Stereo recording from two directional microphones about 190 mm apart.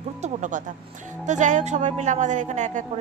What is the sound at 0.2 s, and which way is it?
Speech, 40° right (ahead or behind).